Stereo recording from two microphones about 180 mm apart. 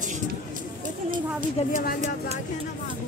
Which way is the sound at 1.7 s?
50° left (ahead or behind).